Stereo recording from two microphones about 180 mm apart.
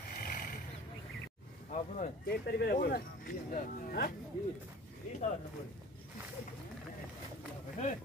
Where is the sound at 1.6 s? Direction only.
40° left (ahead or behind).